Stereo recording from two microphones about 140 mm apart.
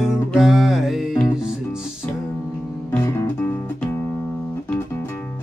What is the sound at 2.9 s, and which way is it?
Music, 15° left (ahead or behind).